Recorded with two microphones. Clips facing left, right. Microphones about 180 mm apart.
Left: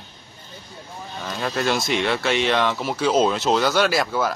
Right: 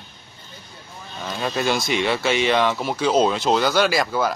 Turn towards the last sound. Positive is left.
turn(degrees=0)  # may be behind; listen again after turning